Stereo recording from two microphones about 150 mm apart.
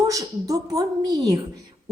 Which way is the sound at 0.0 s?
20° right (ahead or behind).